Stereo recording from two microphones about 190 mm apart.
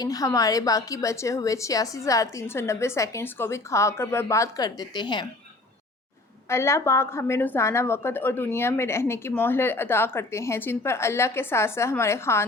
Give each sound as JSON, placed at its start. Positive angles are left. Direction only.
{"t": 0.0, "sound": "a woman's voice", "side_deg": 20}
{"t": 6.5, "sound": "a woman's voice", "side_deg": 15}